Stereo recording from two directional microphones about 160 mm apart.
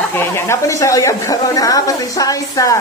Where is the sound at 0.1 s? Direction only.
15° left (ahead or behind).